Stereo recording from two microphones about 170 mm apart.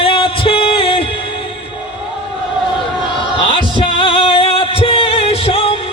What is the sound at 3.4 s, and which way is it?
Music, 30° left (ahead or behind).